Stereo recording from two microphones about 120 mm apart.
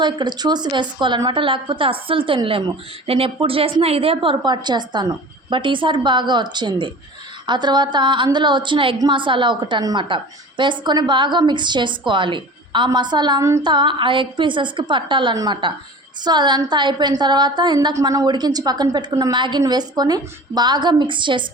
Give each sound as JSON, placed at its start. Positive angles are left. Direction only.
{"t": 0.0, "sound": "a woman's voice", "side_deg": -35}